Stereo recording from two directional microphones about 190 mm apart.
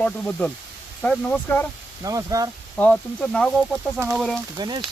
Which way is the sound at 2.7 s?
5° left (ahead or behind).